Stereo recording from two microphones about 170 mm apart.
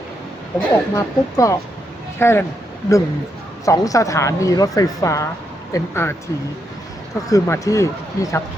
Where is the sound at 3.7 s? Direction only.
20° left (ahead or behind).